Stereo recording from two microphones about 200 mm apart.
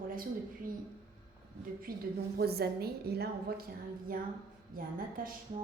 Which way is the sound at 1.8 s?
50° right (ahead or behind).